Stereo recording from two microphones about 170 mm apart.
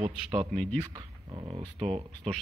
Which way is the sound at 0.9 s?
25° right (ahead or behind).